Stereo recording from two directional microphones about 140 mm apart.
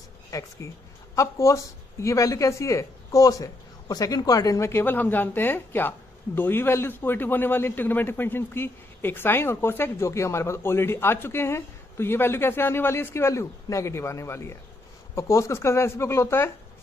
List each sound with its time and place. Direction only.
0.3 s speech: 25° left (ahead or behind)